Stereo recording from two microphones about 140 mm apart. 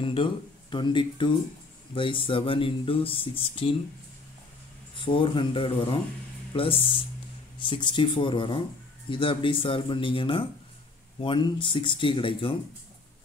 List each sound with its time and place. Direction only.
0.0 s speech: 35° left (ahead or behind)
4.9 s speech: 40° left (ahead or behind)